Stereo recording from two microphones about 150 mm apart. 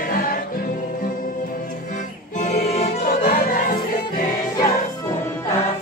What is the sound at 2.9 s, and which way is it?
Music, 85° left.